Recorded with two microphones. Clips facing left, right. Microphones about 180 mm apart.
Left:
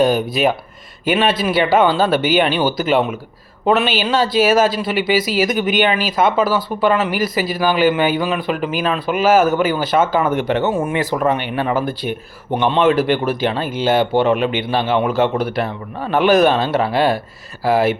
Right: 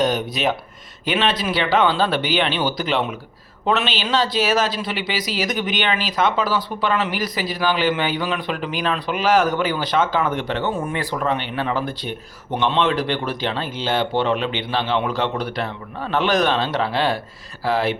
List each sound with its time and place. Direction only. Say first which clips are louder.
0.0 s speech: left 5 dB; 10° left (ahead or behind)
2.5 s speech: left 5 dB; 45° left (ahead or behind)
2.9 s speech: left 6 dB; 5° left (ahead or behind)